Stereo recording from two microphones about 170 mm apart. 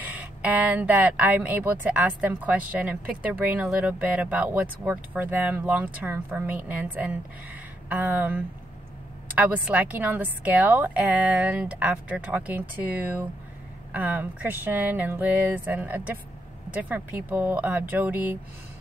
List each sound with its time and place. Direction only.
0.0 s speech: 10° right (ahead or behind)